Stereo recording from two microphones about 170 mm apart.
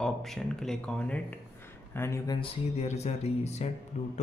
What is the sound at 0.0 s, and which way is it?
Speech, centre (ahead or behind).